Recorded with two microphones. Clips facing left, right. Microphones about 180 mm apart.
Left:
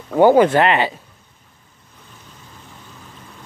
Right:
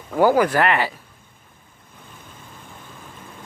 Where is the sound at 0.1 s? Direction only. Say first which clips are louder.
Left 5 dB; 25° left (ahead or behind).